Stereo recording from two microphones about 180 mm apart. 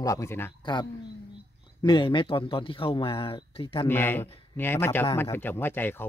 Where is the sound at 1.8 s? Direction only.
25° left (ahead or behind).